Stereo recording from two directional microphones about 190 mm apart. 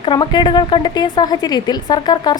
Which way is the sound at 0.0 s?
25° left (ahead or behind).